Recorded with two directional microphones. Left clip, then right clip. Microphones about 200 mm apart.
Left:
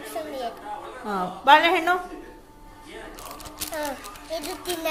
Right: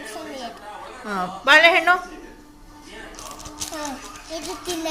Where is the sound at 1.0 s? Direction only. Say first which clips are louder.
Even; 10° left (ahead or behind).